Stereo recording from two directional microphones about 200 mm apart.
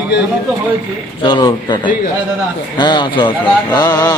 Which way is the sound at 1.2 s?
25° left (ahead or behind).